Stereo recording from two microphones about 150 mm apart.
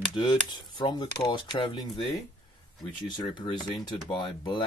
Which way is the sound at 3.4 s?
30° left (ahead or behind).